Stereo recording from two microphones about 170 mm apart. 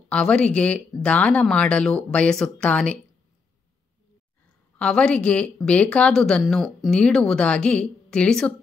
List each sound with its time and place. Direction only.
0.1 s speech: 5° left (ahead or behind)
4.7 s a woman's voice: 5° left (ahead or behind)